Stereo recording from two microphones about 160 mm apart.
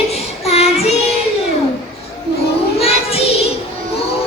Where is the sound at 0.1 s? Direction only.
40° left (ahead or behind).